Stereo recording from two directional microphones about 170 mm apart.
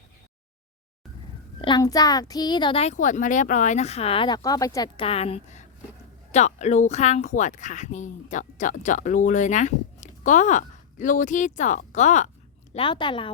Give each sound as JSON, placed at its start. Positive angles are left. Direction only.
{"t": 1.6, "sound": "a woman's voice", "side_deg": 25}
{"t": 4.9, "sound": "a woman's voice", "side_deg": 35}
{"t": 12.7, "sound": "a woman's voice", "side_deg": 30}